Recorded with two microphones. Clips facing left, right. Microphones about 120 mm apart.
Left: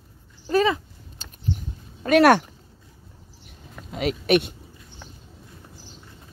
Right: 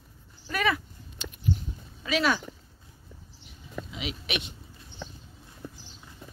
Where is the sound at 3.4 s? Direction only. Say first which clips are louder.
Right 5 dB; 50° left (ahead or behind).